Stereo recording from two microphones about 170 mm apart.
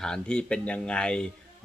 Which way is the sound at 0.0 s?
5° left (ahead or behind).